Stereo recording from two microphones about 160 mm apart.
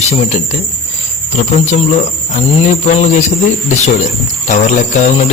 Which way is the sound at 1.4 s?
45° left (ahead or behind).